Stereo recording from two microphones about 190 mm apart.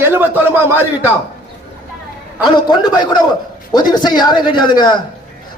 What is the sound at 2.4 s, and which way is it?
A man's voice, 20° left (ahead or behind).